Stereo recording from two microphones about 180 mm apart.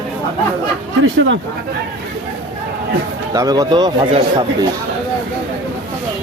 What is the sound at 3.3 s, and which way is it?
Speech, 20° right (ahead or behind).